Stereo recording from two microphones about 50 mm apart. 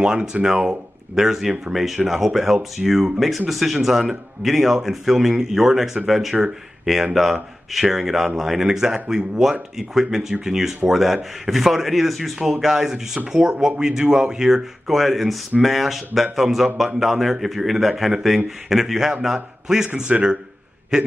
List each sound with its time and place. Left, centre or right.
0.0 s speech: centre
9.0 s speech: right
9.4 s speech: centre
14.9 s a man's voice: centre